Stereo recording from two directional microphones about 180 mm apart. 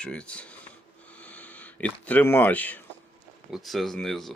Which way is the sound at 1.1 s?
5° left (ahead or behind).